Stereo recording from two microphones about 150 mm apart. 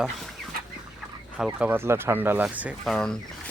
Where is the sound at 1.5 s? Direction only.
10° right (ahead or behind).